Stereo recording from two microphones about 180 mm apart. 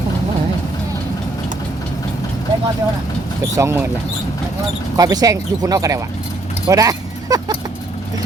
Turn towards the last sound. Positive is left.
turn(degrees=-20)  # may be behind; listen again after turning